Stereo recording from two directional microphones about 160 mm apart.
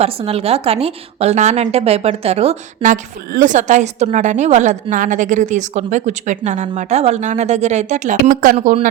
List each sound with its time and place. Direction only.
0.0 s a woman's voice: 40° right (ahead or behind); by 8.5 s 60° right (ahead or behind)
8.5 s a woman's voice: 45° right (ahead or behind)